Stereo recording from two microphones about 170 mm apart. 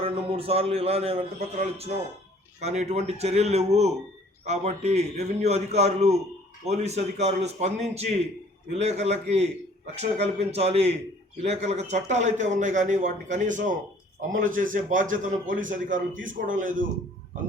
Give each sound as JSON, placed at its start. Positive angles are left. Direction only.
{"t": 0.0, "sound": "a man's voice", "side_deg": -35}